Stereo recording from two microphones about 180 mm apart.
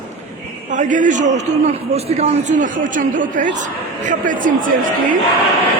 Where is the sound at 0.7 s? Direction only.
45° right (ahead or behind).